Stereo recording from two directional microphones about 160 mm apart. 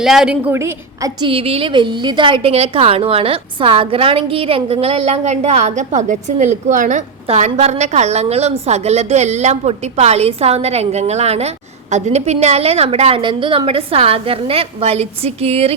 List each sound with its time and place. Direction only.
0.0 s a woman's voice: 5° right (ahead or behind)
0.5 s a woman's voice: 15° right (ahead or behind)
1.2 s a woman's voice: 35° right (ahead or behind)